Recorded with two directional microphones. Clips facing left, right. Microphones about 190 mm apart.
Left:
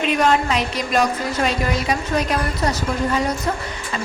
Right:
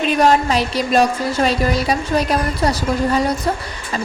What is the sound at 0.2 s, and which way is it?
Speech, 35° right (ahead or behind).